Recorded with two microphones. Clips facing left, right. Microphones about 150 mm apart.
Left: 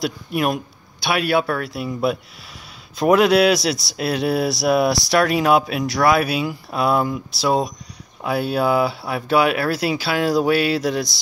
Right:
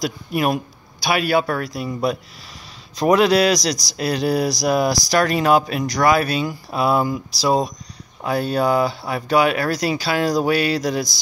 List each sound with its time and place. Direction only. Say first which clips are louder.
0.0 s speech: even; centre (ahead or behind)